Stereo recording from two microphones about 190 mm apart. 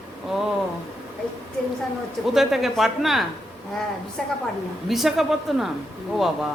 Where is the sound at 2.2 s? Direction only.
Centre (ahead or behind).